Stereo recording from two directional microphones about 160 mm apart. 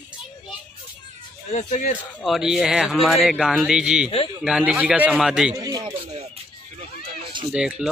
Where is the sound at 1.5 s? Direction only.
50° left (ahead or behind).